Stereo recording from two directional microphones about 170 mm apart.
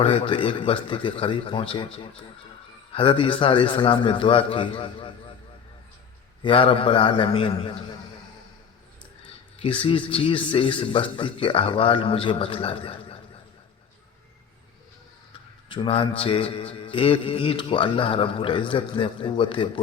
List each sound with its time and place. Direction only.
0.0 s mantra: 35° left (ahead or behind)
6.4 s mantra: 30° left (ahead or behind)
9.6 s mantra: 30° left (ahead or behind)
15.7 s mantra: 30° left (ahead or behind)